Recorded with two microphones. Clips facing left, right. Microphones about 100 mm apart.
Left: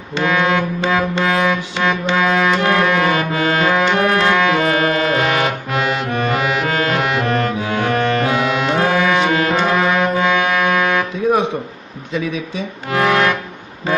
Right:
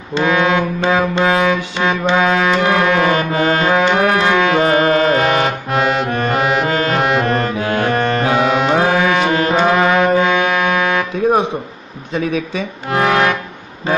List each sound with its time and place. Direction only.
0.2 s music: 20° right (ahead or behind)
3.3 s music: 30° right (ahead or behind)
8.7 s music: 25° right (ahead or behind)
9.6 s music: 20° right (ahead or behind)
12.1 s speech: 50° right (ahead or behind)
13.0 s music: 25° right (ahead or behind)